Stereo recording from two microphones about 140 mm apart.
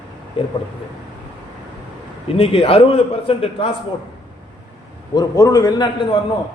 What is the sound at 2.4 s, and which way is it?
A man's voice, 45° left (ahead or behind).